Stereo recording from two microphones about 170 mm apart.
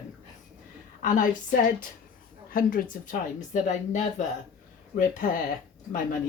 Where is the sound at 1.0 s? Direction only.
50° left (ahead or behind).